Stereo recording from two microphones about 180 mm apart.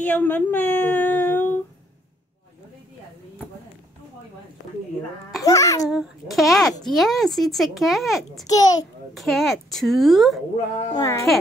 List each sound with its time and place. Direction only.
0.0 s speech: 10° left (ahead or behind)
5.4 s speech: 20° left (ahead or behind)
5.9 s a child's voice: centre (ahead or behind)
8.5 s speech: 20° left (ahead or behind)
9.1 s a child's voice: centre (ahead or behind)
10.9 s speech: 20° left (ahead or behind)